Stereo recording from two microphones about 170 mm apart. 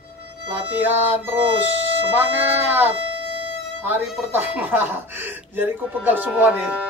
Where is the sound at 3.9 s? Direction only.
10° right (ahead or behind).